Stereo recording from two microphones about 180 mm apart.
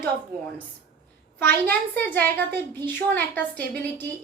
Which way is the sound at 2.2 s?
10° left (ahead or behind).